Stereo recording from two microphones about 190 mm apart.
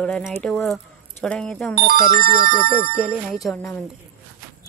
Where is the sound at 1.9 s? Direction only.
50° right (ahead or behind).